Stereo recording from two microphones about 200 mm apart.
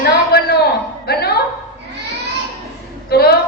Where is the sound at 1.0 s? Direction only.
55° left (ahead or behind).